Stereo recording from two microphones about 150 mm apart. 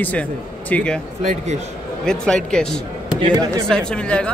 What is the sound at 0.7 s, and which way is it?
Speech, 10° left (ahead or behind).